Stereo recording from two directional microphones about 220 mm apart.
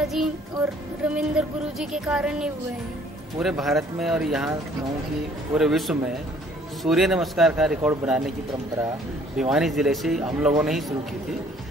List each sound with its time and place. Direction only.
0.0 s music: centre (ahead or behind)
5.5 s music: centre (ahead or behind)
9.4 s music: centre (ahead or behind)